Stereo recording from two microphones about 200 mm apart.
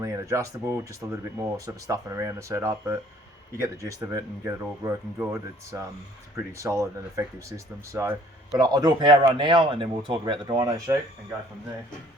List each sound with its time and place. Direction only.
0.0 s speech: 15° right (ahead or behind)